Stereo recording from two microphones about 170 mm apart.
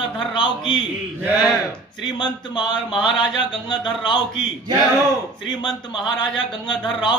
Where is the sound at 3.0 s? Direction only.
Centre (ahead or behind).